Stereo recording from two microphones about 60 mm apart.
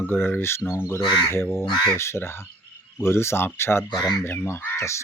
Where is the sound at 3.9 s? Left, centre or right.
Left.